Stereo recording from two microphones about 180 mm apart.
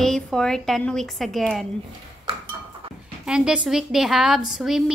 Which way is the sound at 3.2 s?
5° right (ahead or behind).